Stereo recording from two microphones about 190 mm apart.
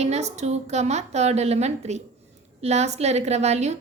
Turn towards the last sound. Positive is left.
turn(degrees=-35)  # may be behind; listen again after turning